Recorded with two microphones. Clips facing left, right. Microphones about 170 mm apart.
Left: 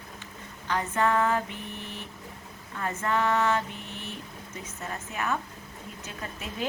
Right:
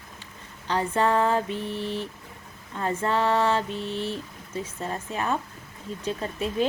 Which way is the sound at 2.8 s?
30° right (ahead or behind).